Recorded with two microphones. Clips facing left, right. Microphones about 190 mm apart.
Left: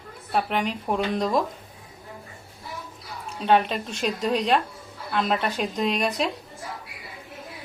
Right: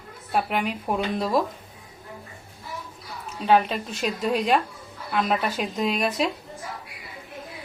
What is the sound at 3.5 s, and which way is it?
Speech, centre (ahead or behind).